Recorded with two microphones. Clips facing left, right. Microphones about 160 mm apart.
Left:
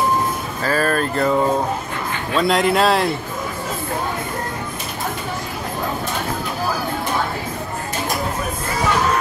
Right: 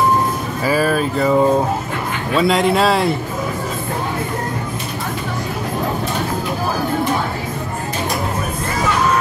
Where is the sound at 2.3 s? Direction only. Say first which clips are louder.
Right 2 dB; centre (ahead or behind).